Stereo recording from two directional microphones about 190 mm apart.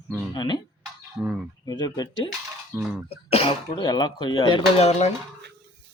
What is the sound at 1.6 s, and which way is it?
Speech, 20° left (ahead or behind).